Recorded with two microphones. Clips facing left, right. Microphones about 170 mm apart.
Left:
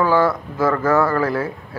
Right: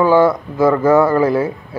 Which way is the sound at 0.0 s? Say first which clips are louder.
Right 5 dB; 20° right (ahead or behind).